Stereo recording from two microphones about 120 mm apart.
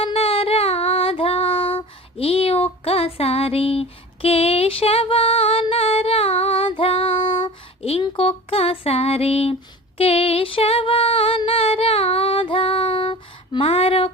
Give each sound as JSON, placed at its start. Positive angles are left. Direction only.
{"t": 0.0, "sound": "female singing", "side_deg": 50}
{"t": 2.8, "sound": "a sound", "side_deg": 55}
{"t": 10.0, "sound": "music", "side_deg": 55}